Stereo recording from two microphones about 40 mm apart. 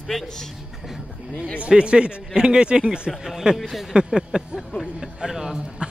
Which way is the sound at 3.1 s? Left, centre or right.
Centre.